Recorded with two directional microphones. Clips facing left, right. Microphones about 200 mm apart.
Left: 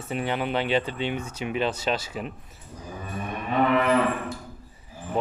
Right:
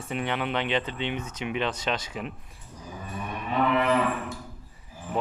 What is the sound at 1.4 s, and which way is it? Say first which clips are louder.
Speech: left 3 dB; 40° left (ahead or behind).